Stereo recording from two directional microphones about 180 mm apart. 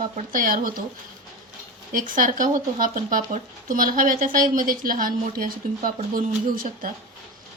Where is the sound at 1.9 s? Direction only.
50° right (ahead or behind).